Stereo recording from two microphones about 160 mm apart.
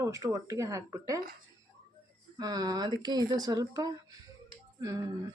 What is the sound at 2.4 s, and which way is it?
Speech, 25° right (ahead or behind).